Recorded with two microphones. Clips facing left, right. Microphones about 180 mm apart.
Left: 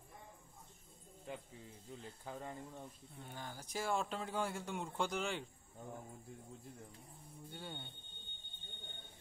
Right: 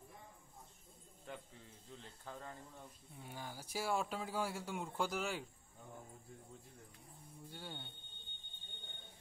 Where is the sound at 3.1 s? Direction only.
10° right (ahead or behind).